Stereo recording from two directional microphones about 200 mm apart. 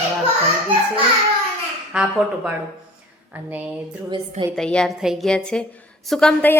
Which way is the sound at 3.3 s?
10° right (ahead or behind).